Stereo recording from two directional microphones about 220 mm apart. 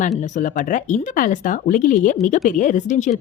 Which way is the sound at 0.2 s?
35° left (ahead or behind).